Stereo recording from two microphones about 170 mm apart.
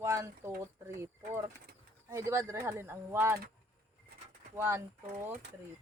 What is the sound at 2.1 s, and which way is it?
A woman's voice, 15° right (ahead or behind).